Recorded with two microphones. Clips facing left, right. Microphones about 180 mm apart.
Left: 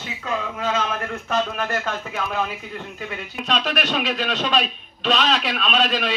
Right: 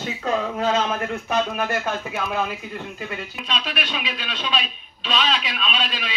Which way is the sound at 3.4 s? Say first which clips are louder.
Left 6 dB; 45° left (ahead or behind).